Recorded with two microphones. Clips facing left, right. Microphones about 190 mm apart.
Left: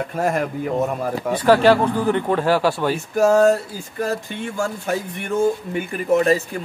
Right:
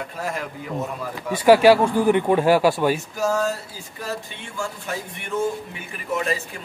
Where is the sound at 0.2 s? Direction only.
55° left (ahead or behind).